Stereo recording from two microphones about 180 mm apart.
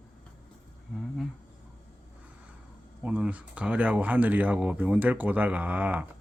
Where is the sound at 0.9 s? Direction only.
5° left (ahead or behind).